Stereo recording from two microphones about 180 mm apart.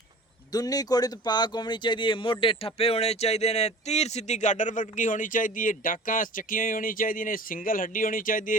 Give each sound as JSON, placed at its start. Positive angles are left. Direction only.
{"t": 0.5, "sound": "speech", "side_deg": 20}